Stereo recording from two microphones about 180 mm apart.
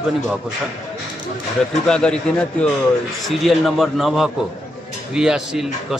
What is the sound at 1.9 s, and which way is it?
Speech, 5° left (ahead or behind).